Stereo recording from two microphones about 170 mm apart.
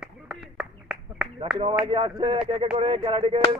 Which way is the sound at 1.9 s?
30° right (ahead or behind).